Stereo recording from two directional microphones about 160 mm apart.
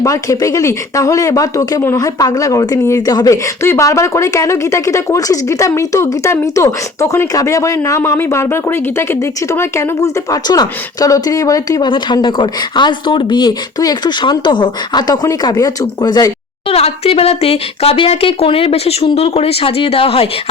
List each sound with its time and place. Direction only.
0.0 s speech: 20° left (ahead or behind)
16.7 s speech: 40° left (ahead or behind)